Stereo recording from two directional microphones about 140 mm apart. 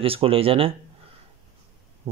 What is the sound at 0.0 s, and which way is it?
Speech, 40° right (ahead or behind).